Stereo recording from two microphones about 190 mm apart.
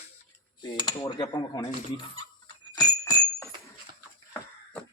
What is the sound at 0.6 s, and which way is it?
Speech, 20° left (ahead or behind).